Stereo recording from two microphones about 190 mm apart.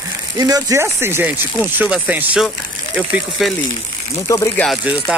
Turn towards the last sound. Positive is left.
turn(degrees=0)  # may be behind; listen again after turning